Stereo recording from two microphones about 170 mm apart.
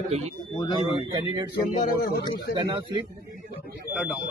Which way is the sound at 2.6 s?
30° right (ahead or behind).